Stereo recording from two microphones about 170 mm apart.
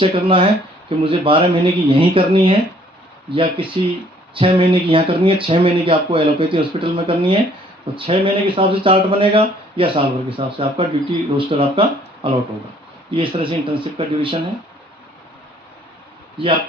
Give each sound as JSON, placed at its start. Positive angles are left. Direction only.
{"t": 0.0, "sound": "speech", "side_deg": -30}